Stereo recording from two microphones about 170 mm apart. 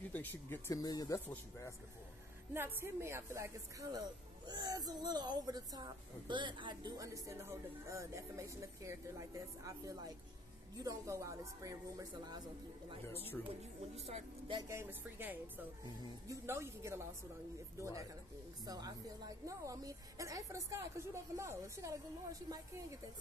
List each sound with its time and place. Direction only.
0.1 s speech: 10° left (ahead or behind)
2.5 s speech: 15° right (ahead or behind)
13.9 s speech: 40° right (ahead or behind)
14.6 s speech: 15° right (ahead or behind)